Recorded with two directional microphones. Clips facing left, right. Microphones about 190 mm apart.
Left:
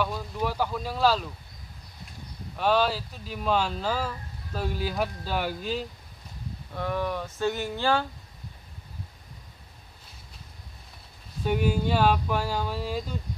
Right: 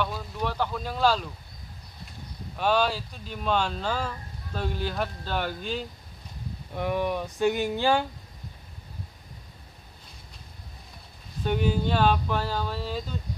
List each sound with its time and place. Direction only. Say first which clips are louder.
0.0 s speech: left 1 dB; 5° left (ahead or behind)
2.5 s speech: left 1 dB; centre (ahead or behind)
6.7 s a sound: right 2 dB; 15° right (ahead or behind)
11.4 s speech: even; 5° left (ahead or behind)